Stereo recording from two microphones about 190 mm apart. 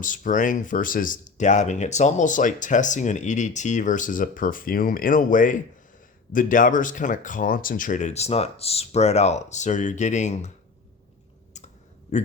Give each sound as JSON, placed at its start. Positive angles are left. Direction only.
{"t": 0.0, "sound": "speech", "side_deg": 45}